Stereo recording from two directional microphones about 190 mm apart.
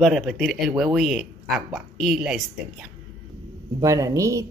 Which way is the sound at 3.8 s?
15° right (ahead or behind).